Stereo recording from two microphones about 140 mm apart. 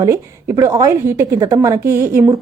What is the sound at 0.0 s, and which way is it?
A woman's voice, 20° right (ahead or behind).